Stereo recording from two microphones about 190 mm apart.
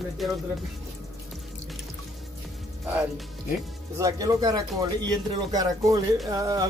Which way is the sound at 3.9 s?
20° right (ahead or behind).